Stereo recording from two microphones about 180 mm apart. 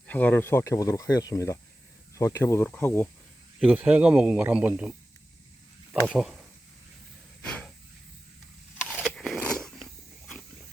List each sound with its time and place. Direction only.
0.1 s speech: 10° left (ahead or behind)
3.6 s speech: 5° right (ahead or behind)
6.1 s speech: centre (ahead or behind)
7.4 s a sound: 5° left (ahead or behind)
8.8 s biting: 5° left (ahead or behind)